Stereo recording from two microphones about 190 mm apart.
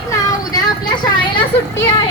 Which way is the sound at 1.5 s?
35° left (ahead or behind).